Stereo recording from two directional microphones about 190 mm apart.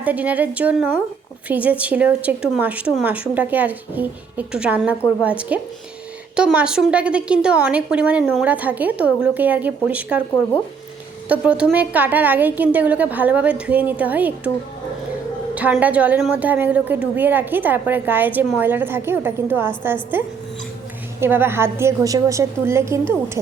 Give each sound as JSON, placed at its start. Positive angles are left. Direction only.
{"t": 0.0, "sound": "a woman's voice", "side_deg": -10}
{"t": 11.3, "sound": "a woman's voice", "side_deg": -5}
{"t": 15.5, "sound": "a woman's voice", "side_deg": -10}